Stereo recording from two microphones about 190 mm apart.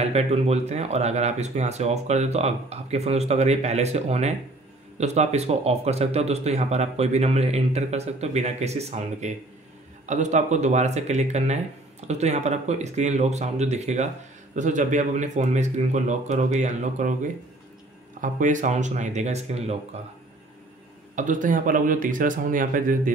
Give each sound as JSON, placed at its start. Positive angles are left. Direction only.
{"t": 0.0, "sound": "speech", "side_deg": -35}
{"t": 21.1, "sound": "a man's voice", "side_deg": -40}